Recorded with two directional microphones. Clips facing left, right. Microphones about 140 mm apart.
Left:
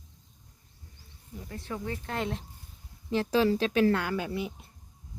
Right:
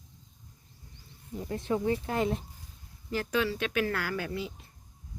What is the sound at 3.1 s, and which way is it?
Speech, 30° left (ahead or behind).